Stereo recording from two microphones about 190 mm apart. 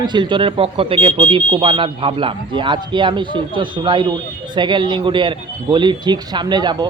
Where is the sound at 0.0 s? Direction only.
25° right (ahead or behind).